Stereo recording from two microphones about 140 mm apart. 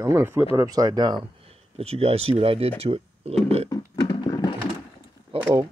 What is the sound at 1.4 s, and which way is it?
Speech, 45° right (ahead or behind).